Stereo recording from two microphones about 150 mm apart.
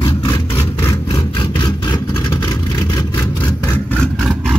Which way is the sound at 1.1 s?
30° left (ahead or behind).